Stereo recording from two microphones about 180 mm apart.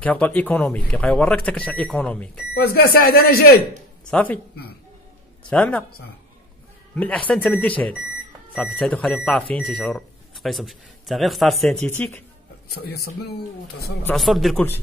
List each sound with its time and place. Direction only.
0.0 s speech: 10° left (ahead or behind)
2.5 s speech: 55° left (ahead or behind)
4.1 s speech: 10° left (ahead or behind)
5.5 s speech: 5° left (ahead or behind)
7.0 s speech: 5° left (ahead or behind)
12.6 s speech: 60° left (ahead or behind)
14.1 s speech: centre (ahead or behind)